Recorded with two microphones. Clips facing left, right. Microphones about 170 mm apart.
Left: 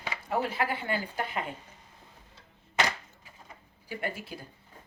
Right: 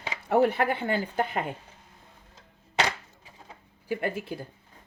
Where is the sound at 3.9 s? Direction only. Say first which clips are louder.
Right 6 dB; 50° right (ahead or behind).